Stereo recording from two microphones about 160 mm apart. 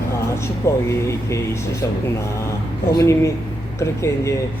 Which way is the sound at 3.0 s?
20° left (ahead or behind).